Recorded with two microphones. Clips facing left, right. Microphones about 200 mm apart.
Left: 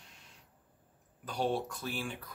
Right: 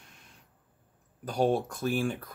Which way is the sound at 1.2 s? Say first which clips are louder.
Right 6 dB; 45° right (ahead or behind).